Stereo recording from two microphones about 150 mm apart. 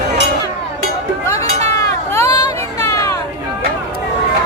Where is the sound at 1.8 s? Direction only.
20° left (ahead or behind).